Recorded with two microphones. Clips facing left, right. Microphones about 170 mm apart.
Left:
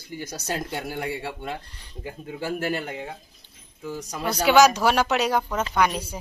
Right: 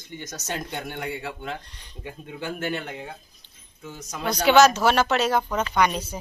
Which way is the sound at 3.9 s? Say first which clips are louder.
Left 3 dB; 35° left (ahead or behind).